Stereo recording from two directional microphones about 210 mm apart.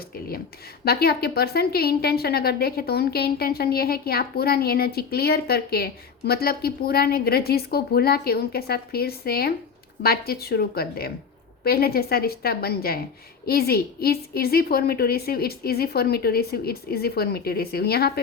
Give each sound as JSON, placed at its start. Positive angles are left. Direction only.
{"t": 0.9, "sound": "a woman's voice", "side_deg": 50}